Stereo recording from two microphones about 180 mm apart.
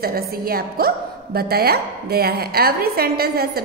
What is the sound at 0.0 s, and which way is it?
A woman's voice, 55° right (ahead or behind).